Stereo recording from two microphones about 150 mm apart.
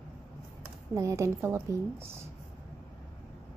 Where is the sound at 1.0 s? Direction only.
20° right (ahead or behind).